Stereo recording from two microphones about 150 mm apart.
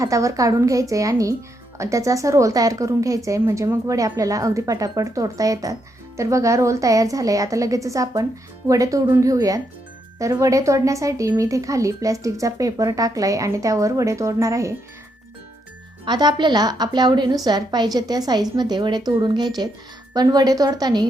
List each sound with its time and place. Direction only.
0.0 s a woman's voice: 20° right (ahead or behind)
16.0 s a woman's voice: 30° right (ahead or behind)